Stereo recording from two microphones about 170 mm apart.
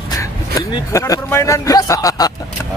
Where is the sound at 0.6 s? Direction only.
20° left (ahead or behind).